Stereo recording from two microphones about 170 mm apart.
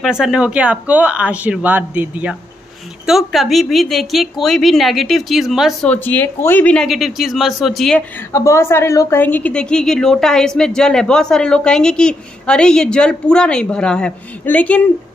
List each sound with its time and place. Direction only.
0.0 s a woman's voice: 5° right (ahead or behind)
8.3 s a woman's voice: 15° left (ahead or behind)